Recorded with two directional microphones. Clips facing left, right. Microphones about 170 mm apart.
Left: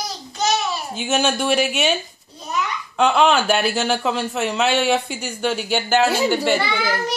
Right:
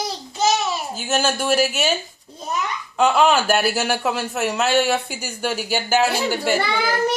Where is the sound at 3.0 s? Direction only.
5° right (ahead or behind).